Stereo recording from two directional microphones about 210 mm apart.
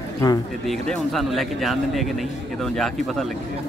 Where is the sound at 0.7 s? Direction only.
Centre (ahead or behind).